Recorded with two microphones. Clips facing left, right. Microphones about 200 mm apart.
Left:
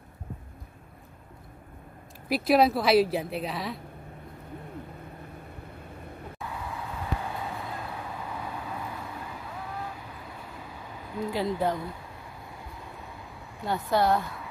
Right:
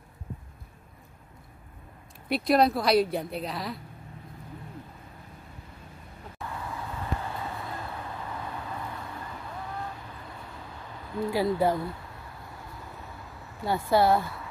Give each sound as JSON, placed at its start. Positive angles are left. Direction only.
{"t": 2.2, "sound": "speech", "side_deg": 0}
{"t": 6.5, "sound": "vehicle", "side_deg": 0}
{"t": 11.3, "sound": "speech", "side_deg": -5}
{"t": 13.7, "sound": "speech", "side_deg": -10}